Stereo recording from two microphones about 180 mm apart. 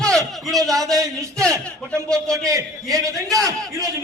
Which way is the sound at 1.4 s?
5° left (ahead or behind).